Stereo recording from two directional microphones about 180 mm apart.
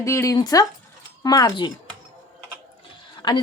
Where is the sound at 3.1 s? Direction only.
25° left (ahead or behind).